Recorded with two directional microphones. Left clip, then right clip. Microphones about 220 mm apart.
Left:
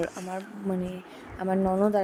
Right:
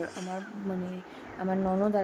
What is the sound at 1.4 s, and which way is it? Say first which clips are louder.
Speech: left 4 dB; 15° left (ahead or behind).